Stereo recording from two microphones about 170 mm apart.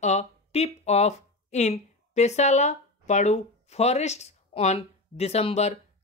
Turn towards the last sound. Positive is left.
turn(degrees=40)  # may be behind; listen again after turning